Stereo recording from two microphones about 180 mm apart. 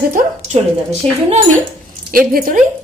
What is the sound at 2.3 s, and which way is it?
Speech, 50° right (ahead or behind).